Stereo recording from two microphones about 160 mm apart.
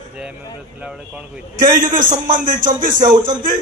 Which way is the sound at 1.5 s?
55° right (ahead or behind).